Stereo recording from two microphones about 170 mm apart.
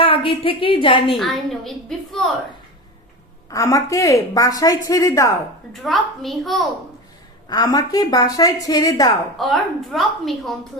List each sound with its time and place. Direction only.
0.0 s a woman's voice: 30° left (ahead or behind)
1.1 s a woman's voice: centre (ahead or behind)
3.5 s speech: 20° left (ahead or behind)
5.7 s a woman's voice: centre (ahead or behind)
7.5 s speech: 20° left (ahead or behind)
9.4 s a woman's voice: centre (ahead or behind)